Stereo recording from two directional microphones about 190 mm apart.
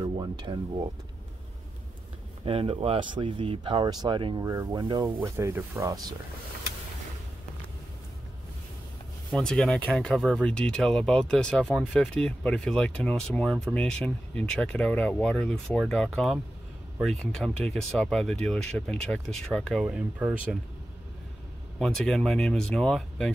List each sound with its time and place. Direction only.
0.0 s speech: 25° right (ahead or behind)
2.4 s speech: 30° right (ahead or behind)
9.3 s speech: 5° left (ahead or behind)
21.7 s speech: centre (ahead or behind)